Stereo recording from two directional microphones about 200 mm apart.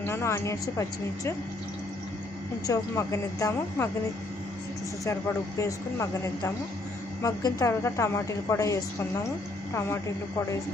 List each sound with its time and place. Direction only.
0.0 s a woman's voice: 15° left (ahead or behind)
2.6 s a woman's voice: 15° left (ahead or behind)
5.5 s a woman's voice: 15° left (ahead or behind)